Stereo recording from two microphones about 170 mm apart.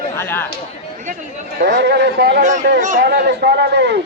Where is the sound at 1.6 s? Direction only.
80° right.